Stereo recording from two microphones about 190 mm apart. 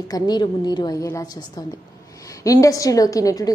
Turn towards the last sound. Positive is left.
turn(degrees=20)  # may be behind; listen again after turning